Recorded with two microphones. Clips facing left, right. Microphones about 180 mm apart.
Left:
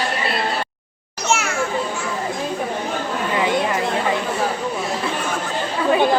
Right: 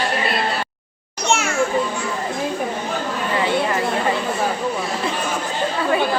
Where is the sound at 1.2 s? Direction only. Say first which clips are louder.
Right 1 dB; centre (ahead or behind).